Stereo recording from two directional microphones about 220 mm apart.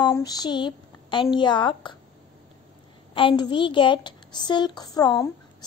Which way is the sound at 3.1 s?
25° left (ahead or behind).